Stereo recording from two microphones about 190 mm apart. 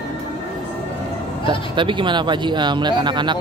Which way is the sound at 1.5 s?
25° right (ahead or behind).